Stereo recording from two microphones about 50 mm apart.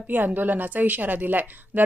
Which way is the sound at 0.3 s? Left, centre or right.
Right.